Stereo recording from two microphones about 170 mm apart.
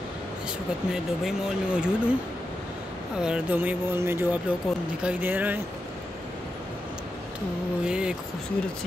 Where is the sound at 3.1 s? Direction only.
5° right (ahead or behind).